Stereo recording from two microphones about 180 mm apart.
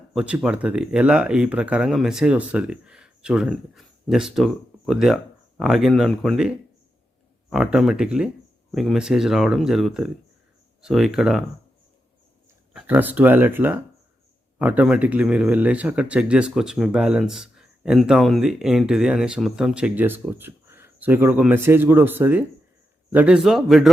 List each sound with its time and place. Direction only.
0.1 s speech: 5° right (ahead or behind)
12.7 s speech: 10° right (ahead or behind)